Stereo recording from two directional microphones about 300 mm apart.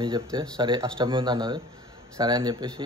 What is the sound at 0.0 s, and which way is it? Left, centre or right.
A man's voice, centre.